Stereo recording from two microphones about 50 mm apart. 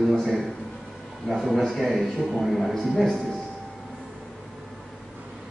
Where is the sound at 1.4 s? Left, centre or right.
Centre.